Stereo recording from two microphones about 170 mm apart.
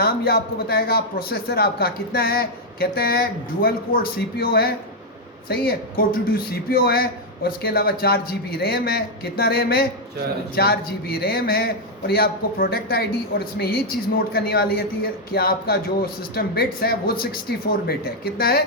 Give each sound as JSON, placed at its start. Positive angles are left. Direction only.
{"t": 0.0, "sound": "speech", "side_deg": 65}